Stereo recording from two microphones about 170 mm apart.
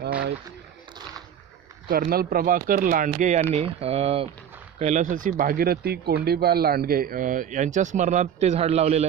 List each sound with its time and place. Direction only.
1.9 s speech: 60° right (ahead or behind); by 9.0 s 40° right (ahead or behind)